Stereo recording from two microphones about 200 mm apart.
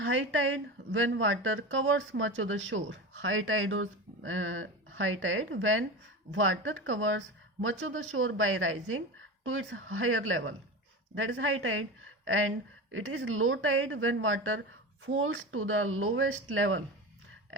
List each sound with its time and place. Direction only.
0.0 s a woman's voice: 75° right (ahead or behind)